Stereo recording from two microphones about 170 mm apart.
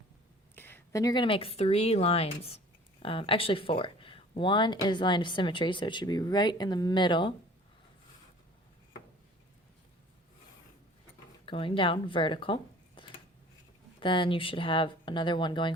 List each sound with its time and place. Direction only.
0.5 s speech: 10° left (ahead or behind); by 7.3 s 25° left (ahead or behind)
11.4 s speech: 30° left (ahead or behind)
13.0 s a sound: 30° left (ahead or behind)
14.0 s speech: 30° left (ahead or behind)